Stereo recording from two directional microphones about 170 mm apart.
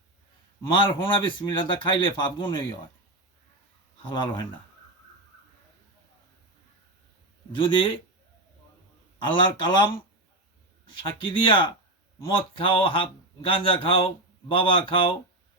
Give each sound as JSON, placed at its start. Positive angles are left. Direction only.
{"t": 0.6, "sound": "a man's voice", "side_deg": 30}
{"t": 4.0, "sound": "a man's voice", "side_deg": 25}
{"t": 9.1, "sound": "a man's voice", "side_deg": 30}
{"t": 11.0, "sound": "a man's voice", "side_deg": 30}